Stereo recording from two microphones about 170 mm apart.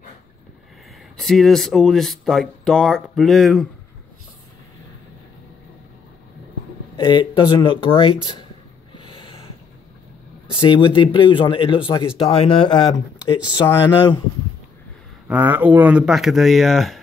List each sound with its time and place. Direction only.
1.1 s speech: centre (ahead or behind)
7.0 s speech: 25° left (ahead or behind)
8.9 s snort: 30° left (ahead or behind)
10.5 s speech: 30° left (ahead or behind)
15.2 s speech: 10° right (ahead or behind)